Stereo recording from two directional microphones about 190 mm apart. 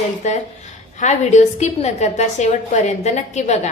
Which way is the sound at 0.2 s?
40° left (ahead or behind).